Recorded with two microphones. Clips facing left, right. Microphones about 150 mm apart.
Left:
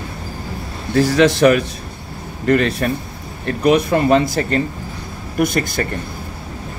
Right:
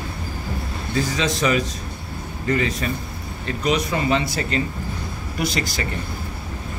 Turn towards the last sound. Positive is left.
turn(degrees=55)  # may be behind; listen again after turning